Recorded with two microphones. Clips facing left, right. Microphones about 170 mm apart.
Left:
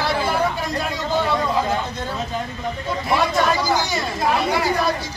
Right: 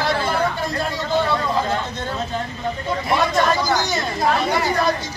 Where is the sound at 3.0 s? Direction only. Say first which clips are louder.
Even; 5° left (ahead or behind).